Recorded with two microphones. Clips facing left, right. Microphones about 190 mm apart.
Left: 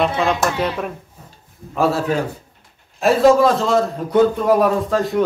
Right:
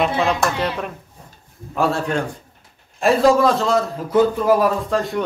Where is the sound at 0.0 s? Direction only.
Centre (ahead or behind).